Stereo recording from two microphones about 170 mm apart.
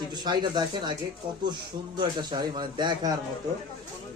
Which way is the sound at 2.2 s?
25° right (ahead or behind).